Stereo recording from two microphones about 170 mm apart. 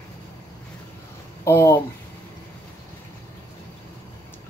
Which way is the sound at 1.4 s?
15° left (ahead or behind).